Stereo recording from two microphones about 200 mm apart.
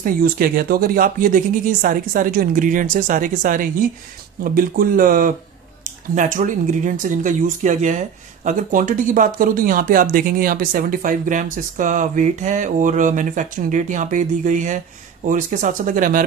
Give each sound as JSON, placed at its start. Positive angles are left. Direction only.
{"t": 0.0, "sound": "speech", "side_deg": -45}